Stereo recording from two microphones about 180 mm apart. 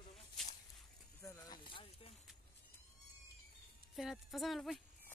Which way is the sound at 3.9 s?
Centre (ahead or behind).